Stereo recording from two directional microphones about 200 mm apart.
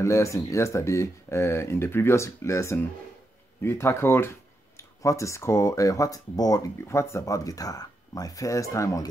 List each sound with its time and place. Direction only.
0.0 s speech: 15° left (ahead or behind)